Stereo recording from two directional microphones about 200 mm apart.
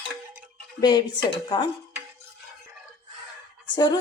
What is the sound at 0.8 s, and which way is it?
Speech, 20° left (ahead or behind).